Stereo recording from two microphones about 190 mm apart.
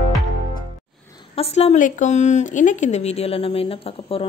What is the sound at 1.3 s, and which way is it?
Speech, 30° left (ahead or behind).